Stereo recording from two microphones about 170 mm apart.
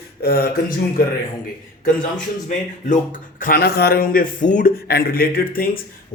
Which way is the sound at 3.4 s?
60° left (ahead or behind).